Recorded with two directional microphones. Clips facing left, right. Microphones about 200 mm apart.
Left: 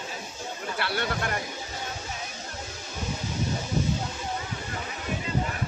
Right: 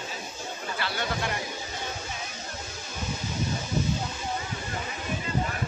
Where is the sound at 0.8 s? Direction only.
60° left (ahead or behind).